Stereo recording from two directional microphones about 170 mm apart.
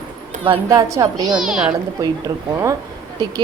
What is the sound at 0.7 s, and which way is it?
Speech, 20° right (ahead or behind).